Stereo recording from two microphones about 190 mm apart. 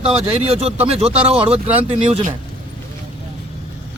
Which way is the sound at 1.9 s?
35° right (ahead or behind).